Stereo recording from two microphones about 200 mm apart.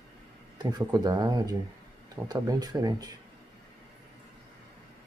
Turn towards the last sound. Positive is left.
turn(degrees=-20)  # may be behind; listen again after turning